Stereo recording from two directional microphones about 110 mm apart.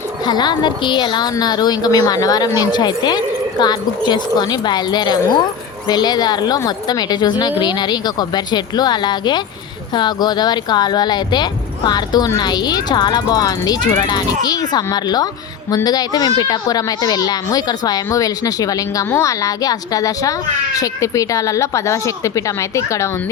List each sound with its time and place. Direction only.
0.3 s a child's voice: 40° left (ahead or behind)